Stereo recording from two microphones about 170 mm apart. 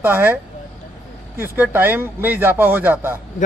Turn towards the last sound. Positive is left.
turn(degrees=-10)  # may be behind; listen again after turning